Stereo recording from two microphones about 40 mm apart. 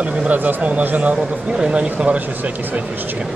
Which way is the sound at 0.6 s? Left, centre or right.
Right.